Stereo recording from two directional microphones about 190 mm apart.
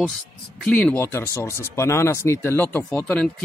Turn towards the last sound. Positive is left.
turn(degrees=5)  # may be behind; listen again after turning